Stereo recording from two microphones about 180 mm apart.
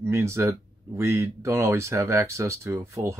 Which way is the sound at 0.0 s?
15° right (ahead or behind).